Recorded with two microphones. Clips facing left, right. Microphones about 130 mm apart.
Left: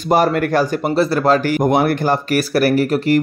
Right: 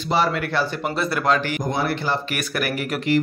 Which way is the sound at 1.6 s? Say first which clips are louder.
Left 11 dB; 60° left (ahead or behind).